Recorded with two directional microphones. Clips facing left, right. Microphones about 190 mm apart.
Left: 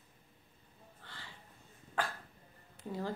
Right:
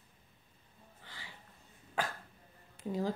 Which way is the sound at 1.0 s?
15° right (ahead or behind).